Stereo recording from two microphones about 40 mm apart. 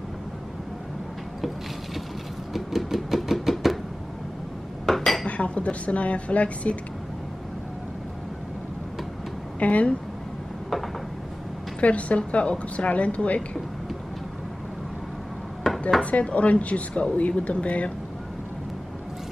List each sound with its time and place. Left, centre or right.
2.5 s a sound: centre
4.8 s dishes: centre
5.2 s speech: left
9.6 s a woman's voice: left
11.8 s speech: left
15.7 s dishes: centre
16.0 s speech: left